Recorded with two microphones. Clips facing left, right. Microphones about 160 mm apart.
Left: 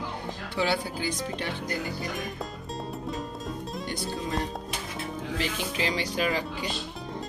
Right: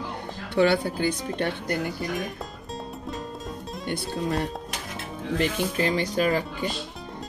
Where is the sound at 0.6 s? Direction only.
55° right (ahead or behind).